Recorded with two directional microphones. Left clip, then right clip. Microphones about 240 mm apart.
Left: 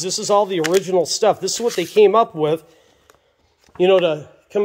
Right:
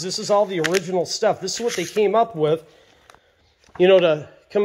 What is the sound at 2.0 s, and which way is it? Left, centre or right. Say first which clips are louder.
Speech: left 5 dB; centre.